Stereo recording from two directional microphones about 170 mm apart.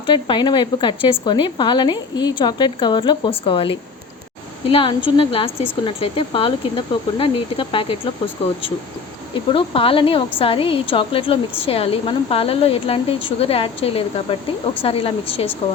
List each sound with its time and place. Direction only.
0.0 s a woman's voice: 30° left (ahead or behind)
9.3 s speech: 30° left (ahead or behind)